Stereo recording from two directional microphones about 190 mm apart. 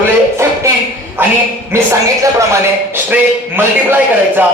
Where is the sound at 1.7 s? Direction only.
15° right (ahead or behind).